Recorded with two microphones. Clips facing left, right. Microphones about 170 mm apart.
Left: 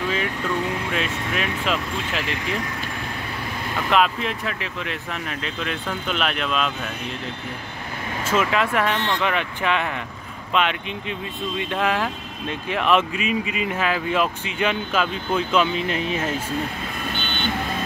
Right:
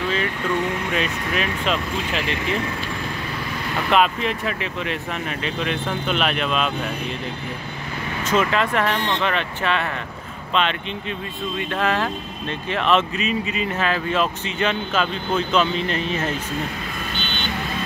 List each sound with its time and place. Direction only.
0.9 s speech: centre (ahead or behind)
3.9 s speech: centre (ahead or behind)
8.3 s speech: 5° left (ahead or behind)
8.9 s speech: 15° right (ahead or behind)
9.2 s speech: 10° left (ahead or behind)